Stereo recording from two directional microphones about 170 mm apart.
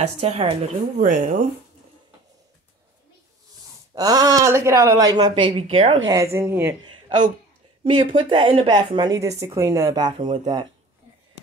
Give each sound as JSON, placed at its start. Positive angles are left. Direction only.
{"t": 0.0, "sound": "speech", "side_deg": -40}
{"t": 0.9, "sound": "speech", "side_deg": -50}
{"t": 3.9, "sound": "a woman's voice", "side_deg": -20}
{"t": 6.0, "sound": "a woman's voice", "side_deg": -15}
{"t": 6.8, "sound": "a sound", "side_deg": -30}
{"t": 7.8, "sound": "a woman's voice", "side_deg": -30}